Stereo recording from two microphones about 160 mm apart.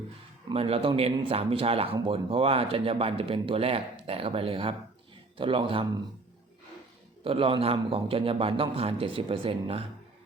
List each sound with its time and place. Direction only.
0.5 s speech: 35° right (ahead or behind)
7.3 s speech: 35° right (ahead or behind)